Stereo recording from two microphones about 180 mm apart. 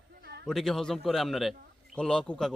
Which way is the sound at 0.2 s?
65° right (ahead or behind).